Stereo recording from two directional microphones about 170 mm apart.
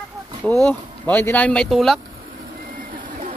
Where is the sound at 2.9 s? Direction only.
50° right (ahead or behind).